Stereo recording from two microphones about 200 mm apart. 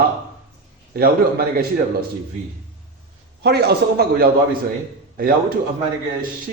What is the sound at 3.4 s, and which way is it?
A man's voice, 55° right (ahead or behind).